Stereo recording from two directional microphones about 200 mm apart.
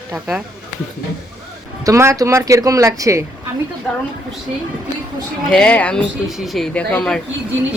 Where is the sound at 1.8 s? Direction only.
15° right (ahead or behind).